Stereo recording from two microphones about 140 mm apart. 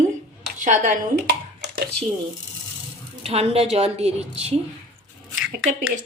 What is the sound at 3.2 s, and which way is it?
A woman's voice, 50° right (ahead or behind).